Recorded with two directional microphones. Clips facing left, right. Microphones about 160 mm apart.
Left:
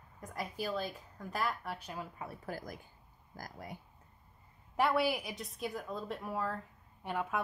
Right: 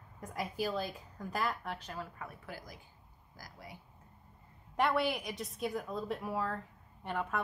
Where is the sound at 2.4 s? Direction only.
45° left (ahead or behind).